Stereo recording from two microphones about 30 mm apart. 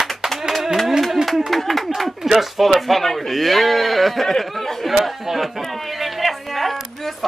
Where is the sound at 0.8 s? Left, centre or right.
Centre.